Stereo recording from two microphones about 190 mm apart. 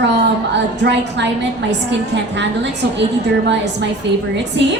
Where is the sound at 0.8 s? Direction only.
65° right (ahead or behind).